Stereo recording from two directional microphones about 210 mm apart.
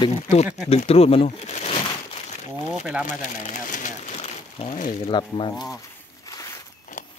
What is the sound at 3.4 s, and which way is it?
Speech, 35° left (ahead or behind).